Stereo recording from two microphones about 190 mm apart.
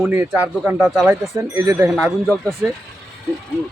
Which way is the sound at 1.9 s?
Centre (ahead or behind).